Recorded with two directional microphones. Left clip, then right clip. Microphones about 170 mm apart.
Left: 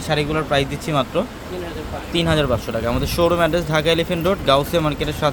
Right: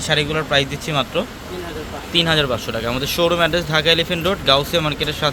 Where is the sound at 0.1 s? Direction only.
5° left (ahead or behind).